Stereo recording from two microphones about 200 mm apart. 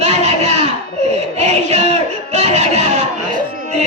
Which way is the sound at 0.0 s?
35° right (ahead or behind).